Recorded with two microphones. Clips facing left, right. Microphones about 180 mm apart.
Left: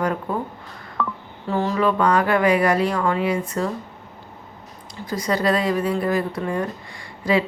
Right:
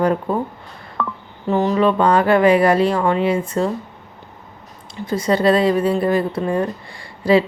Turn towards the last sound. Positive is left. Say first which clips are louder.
# right 6 dB
turn(degrees=-30)  # may be behind; listen again after turning